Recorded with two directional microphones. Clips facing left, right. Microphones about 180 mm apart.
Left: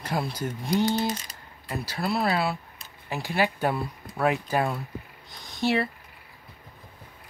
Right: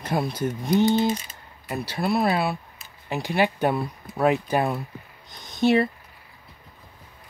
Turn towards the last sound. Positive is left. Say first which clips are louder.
# right 5 dB
turn(degrees=-20)  # may be behind; listen again after turning